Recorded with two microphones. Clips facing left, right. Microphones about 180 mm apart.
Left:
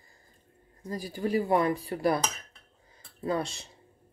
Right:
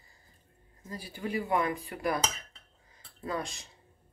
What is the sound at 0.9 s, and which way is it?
Speech, 40° left (ahead or behind).